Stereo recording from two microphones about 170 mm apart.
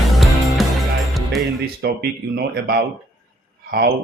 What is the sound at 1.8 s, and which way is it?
Speech, 65° right (ahead or behind).